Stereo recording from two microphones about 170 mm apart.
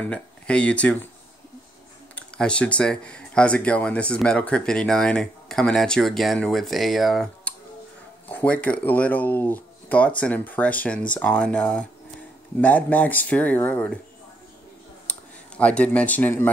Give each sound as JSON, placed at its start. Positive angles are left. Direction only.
{"t": 0.0, "sound": "speech", "side_deg": 5}
{"t": 2.1, "sound": "speech", "side_deg": 5}
{"t": 15.0, "sound": "speech", "side_deg": 5}